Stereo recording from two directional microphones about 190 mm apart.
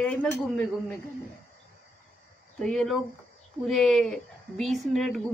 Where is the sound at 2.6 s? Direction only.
5° left (ahead or behind).